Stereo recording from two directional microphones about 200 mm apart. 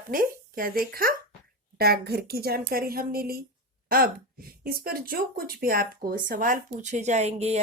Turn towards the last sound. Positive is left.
turn(degrees=-35)  # may be behind; listen again after turning